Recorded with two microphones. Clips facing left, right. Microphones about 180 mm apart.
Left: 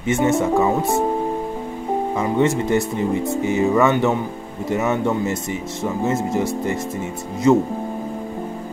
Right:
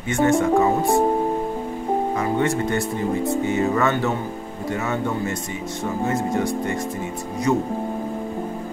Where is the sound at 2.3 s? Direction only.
20° left (ahead or behind).